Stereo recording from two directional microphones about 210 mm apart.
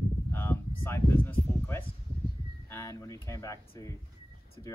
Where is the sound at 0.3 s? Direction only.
10° left (ahead or behind).